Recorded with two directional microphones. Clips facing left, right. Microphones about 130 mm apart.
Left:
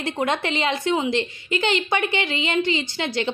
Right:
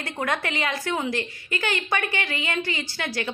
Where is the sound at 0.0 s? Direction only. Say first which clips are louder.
Left 4 dB; 25° left (ahead or behind).